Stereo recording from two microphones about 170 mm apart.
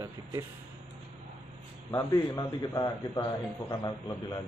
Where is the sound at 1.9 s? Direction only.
20° left (ahead or behind).